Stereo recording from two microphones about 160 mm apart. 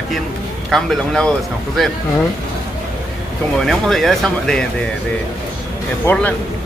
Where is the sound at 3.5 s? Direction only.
Centre (ahead or behind).